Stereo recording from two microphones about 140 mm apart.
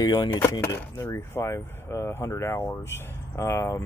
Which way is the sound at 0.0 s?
30° left (ahead or behind).